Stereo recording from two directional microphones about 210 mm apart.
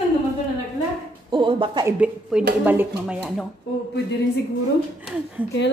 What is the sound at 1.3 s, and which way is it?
Speech, 25° right (ahead or behind).